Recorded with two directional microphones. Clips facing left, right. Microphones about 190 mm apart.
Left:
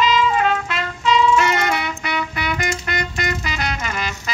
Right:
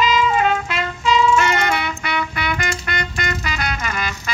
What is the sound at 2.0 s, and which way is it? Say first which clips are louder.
Music: right 1 dB; 20° left (ahead or behind).